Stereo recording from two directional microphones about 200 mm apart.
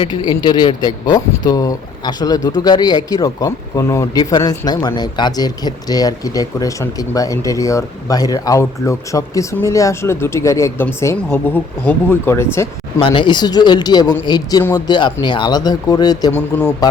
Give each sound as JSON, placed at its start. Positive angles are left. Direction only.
{"t": 0.0, "sound": "speech", "side_deg": 20}
{"t": 13.0, "sound": "speech", "side_deg": 25}